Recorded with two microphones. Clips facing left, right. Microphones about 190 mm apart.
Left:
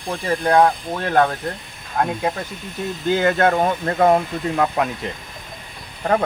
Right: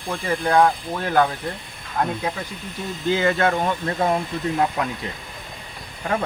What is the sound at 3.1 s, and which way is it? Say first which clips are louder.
Speech: left 3 dB; 50° left (ahead or behind).